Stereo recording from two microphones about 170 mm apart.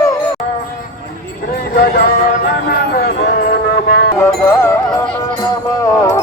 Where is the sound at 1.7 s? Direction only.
60° left (ahead or behind).